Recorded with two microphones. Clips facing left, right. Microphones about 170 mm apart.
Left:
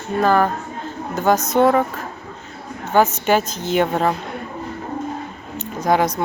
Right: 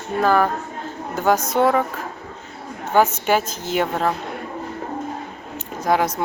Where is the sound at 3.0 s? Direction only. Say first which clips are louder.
Left 1 dB; 10° right (ahead or behind).